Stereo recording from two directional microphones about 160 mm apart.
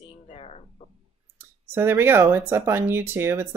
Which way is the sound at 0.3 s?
40° left (ahead or behind).